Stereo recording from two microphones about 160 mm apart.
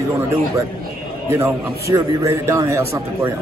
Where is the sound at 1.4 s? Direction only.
20° right (ahead or behind).